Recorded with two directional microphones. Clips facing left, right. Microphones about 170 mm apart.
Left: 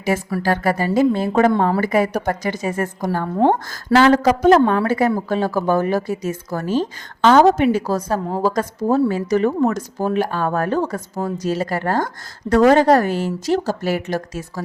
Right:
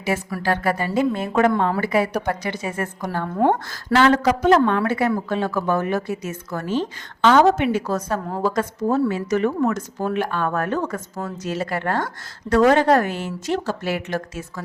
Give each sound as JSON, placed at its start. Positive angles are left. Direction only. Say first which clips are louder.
{"t": 0.4, "sound": "speech", "louder": "left 2 dB", "side_deg": 40}